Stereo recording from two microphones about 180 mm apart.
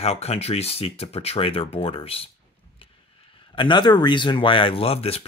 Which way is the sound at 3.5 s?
25° left (ahead or behind).